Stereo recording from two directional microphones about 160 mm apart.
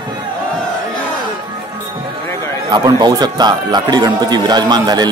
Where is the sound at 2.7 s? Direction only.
25° right (ahead or behind).